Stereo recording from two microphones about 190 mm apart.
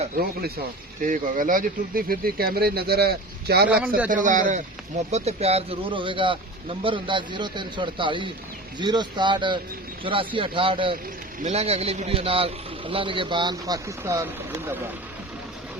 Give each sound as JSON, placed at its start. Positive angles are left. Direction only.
{"t": 1.0, "sound": "speech", "side_deg": -45}
{"t": 3.7, "sound": "speech", "side_deg": -5}
{"t": 4.1, "sound": "a man's voice", "side_deg": -40}